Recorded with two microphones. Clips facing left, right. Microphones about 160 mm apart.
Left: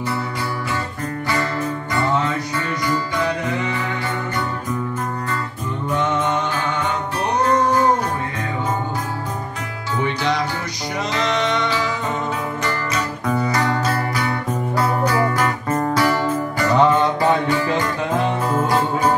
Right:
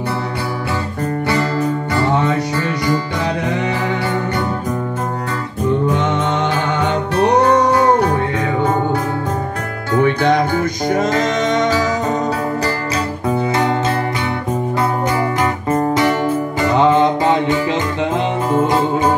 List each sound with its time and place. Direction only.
7.2 s music: 75° right (ahead or behind)
9.9 s music: 55° right (ahead or behind)
13.3 s music: 25° right (ahead or behind)